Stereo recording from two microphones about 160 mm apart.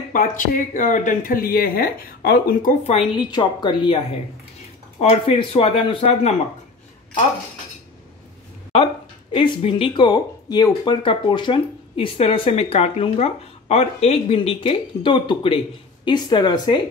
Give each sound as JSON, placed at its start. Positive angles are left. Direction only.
{"t": 0.1, "sound": "speech", "side_deg": 55}
{"t": 2.8, "sound": "speech", "side_deg": 35}
{"t": 5.0, "sound": "speech", "side_deg": 40}
{"t": 9.3, "sound": "speech", "side_deg": 35}